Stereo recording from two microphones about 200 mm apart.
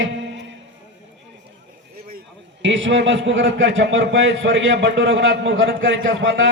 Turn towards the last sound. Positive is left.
turn(degrees=-70)  # may be behind; listen again after turning